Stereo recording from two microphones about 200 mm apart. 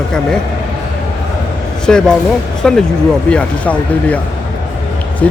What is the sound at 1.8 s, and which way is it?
Speech, 5° left (ahead or behind).